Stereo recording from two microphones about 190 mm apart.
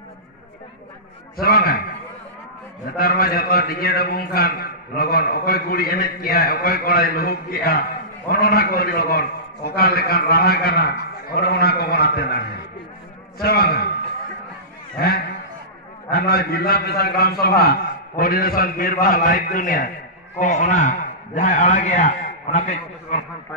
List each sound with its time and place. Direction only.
1.3 s a man's voice: 50° left (ahead or behind)
3.0 s a man's voice: 50° left (ahead or behind)
15.0 s a man's voice: 55° left (ahead or behind); by 23.2 s 35° left (ahead or behind)